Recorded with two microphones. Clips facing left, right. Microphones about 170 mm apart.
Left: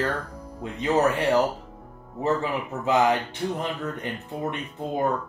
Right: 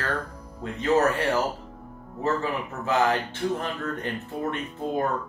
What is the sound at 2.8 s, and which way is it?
Speech, 15° left (ahead or behind).